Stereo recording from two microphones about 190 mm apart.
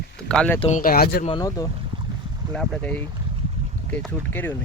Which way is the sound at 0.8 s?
50° left (ahead or behind).